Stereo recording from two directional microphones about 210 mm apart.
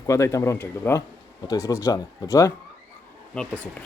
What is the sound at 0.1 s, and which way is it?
Speech, 15° left (ahead or behind).